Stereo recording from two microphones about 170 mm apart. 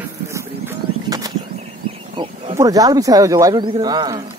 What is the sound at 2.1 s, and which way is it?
Wild animals, 30° right (ahead or behind).